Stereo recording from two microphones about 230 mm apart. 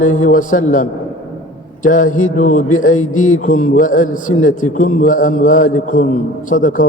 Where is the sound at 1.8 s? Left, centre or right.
Left.